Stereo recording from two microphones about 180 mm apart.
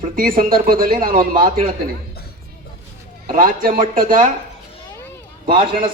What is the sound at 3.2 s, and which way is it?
Speech, 50° right (ahead or behind).